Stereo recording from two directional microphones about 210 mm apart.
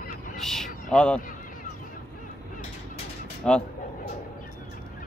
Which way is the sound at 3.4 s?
5° left (ahead or behind).